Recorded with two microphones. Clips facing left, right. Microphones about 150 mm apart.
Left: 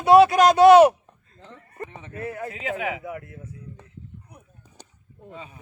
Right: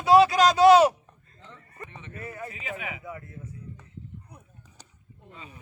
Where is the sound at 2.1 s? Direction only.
65° left (ahead or behind).